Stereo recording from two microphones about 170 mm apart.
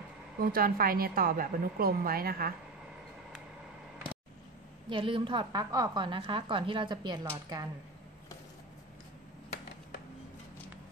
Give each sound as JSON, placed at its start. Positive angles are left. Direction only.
{"t": 0.4, "sound": "a woman's voice", "side_deg": -60}
{"t": 4.8, "sound": "a woman's voice", "side_deg": -30}